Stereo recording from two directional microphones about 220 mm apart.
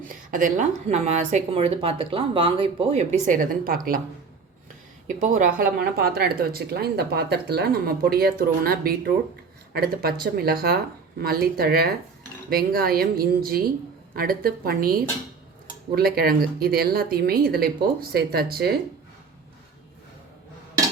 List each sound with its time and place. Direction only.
0.3 s speech: 35° right (ahead or behind)
5.0 s speech: 35° right (ahead or behind)